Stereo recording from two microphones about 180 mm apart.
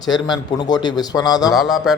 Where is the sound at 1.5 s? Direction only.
Centre (ahead or behind).